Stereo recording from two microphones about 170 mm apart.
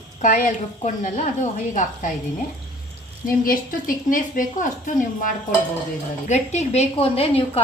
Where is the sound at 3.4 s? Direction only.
55° left (ahead or behind).